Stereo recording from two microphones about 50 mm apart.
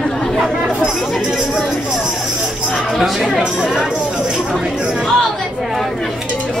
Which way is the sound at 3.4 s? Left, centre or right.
Centre.